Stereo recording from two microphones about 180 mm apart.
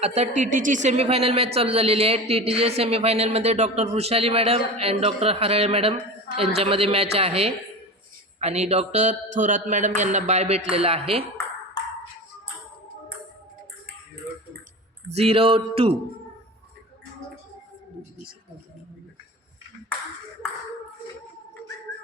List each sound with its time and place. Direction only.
0.0 s speech: 40° right (ahead or behind)
15.1 s speech: 35° right (ahead or behind)